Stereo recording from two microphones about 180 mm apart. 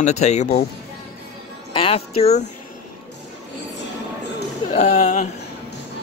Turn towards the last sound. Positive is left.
turn(degrees=40)  # may be behind; listen again after turning